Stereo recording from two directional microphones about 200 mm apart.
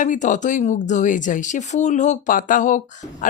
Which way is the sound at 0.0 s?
40° left (ahead or behind).